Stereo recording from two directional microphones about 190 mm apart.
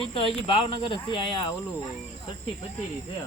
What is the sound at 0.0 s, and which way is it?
Speech, 30° left (ahead or behind).